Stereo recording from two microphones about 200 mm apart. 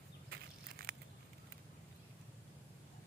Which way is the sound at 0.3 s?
50° right (ahead or behind).